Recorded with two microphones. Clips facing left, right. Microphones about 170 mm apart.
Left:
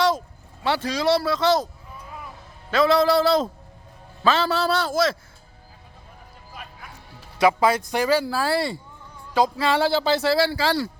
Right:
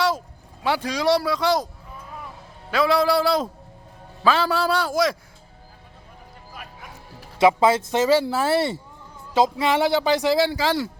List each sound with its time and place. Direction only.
0.6 s speech: 10° right (ahead or behind)
2.6 s speech: 10° right (ahead or behind)
7.3 s speech: 25° right (ahead or behind)